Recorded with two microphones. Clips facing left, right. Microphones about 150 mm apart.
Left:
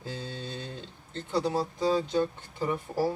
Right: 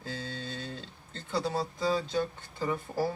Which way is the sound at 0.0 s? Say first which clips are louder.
Left 1 dB; 15° left (ahead or behind).